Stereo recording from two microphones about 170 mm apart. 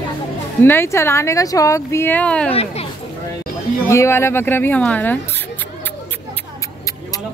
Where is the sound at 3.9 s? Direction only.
15° left (ahead or behind).